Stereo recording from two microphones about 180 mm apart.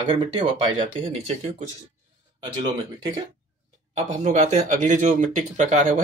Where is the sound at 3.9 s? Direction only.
40° right (ahead or behind).